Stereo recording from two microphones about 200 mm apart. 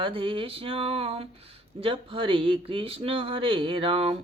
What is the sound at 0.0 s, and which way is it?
Speech, 25° right (ahead or behind).